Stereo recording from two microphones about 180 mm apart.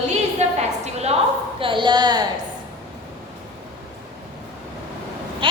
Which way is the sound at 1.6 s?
25° right (ahead or behind).